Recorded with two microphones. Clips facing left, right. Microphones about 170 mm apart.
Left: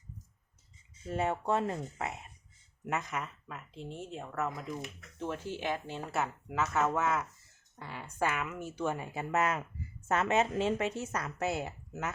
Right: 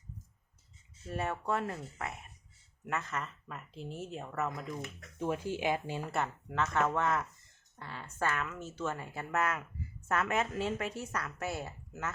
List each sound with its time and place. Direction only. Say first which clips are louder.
1.1 s speech: left 3 dB; 20° left (ahead or behind)
3.4 s speech: even; centre (ahead or behind)
5.1 s speech: right 3 dB; 10° right (ahead or behind)
6.1 s speech: left 3 dB; 5° left (ahead or behind)
7.8 s speech: left 3 dB; 15° left (ahead or behind)